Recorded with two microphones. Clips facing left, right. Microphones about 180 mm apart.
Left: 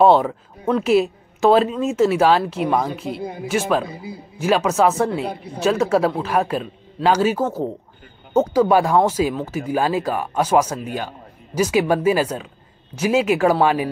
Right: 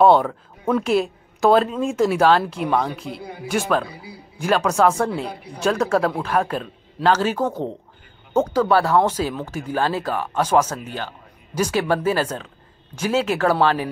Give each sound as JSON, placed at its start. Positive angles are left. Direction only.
{"t": 0.0, "sound": "a woman's voice", "side_deg": 5}
{"t": 3.2, "sound": "speech", "side_deg": 20}
{"t": 4.4, "sound": "a woman's voice", "side_deg": 5}